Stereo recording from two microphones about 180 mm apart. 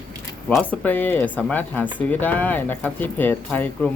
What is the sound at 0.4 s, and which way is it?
Speech, 5° left (ahead or behind).